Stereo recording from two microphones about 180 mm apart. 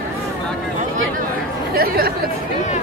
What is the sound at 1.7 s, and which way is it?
Chatter, 55° right (ahead or behind).